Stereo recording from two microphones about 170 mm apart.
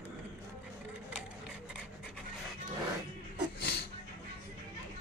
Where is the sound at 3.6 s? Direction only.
70° left (ahead or behind).